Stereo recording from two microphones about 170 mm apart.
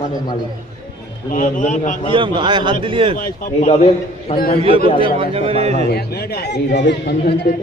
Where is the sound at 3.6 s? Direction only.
40° left (ahead or behind).